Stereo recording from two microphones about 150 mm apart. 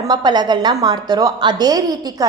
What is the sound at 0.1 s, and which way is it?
A woman's voice, 25° right (ahead or behind).